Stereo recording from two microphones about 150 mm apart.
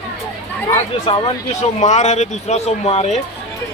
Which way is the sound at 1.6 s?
55° left (ahead or behind).